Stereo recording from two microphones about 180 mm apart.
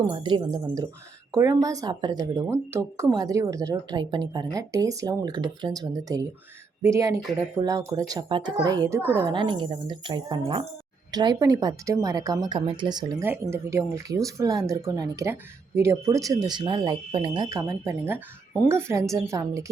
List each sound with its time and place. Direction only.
0.1 s speech: 25° right (ahead or behind)
13.2 s speech: 10° right (ahead or behind)